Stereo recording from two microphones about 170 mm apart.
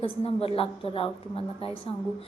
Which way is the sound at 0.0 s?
35° left (ahead or behind).